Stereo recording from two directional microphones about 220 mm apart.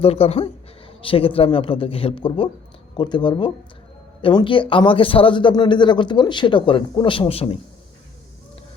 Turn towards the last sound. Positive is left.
turn(degrees=25)  # may be behind; listen again after turning